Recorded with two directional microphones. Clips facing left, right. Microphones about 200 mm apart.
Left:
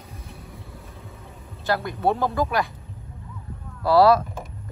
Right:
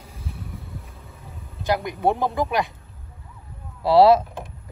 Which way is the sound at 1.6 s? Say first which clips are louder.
Right 1 dB; 15° right (ahead or behind).